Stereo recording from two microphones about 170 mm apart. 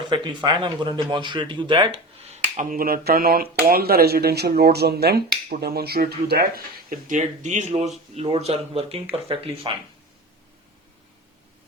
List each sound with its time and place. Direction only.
0.0 s speech: 25° right (ahead or behind)
2.6 s speech: 55° right (ahead or behind)
6.9 s speech: 45° right (ahead or behind)